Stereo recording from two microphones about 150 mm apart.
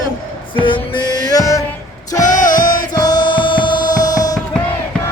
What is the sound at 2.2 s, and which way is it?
Music, 60° left (ahead or behind).